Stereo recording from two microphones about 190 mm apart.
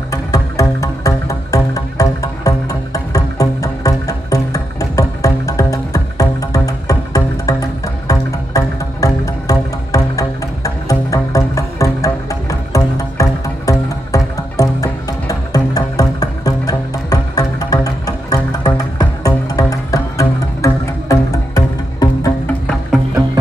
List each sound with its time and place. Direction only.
0.1 s music: 15° left (ahead or behind)